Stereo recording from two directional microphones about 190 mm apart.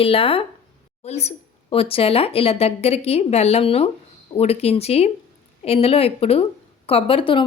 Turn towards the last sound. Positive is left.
turn(degrees=25)  # may be behind; listen again after turning